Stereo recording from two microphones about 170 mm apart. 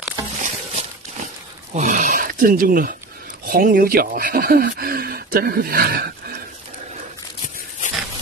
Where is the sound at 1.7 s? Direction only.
45° right (ahead or behind); by 6.1 s 60° right (ahead or behind).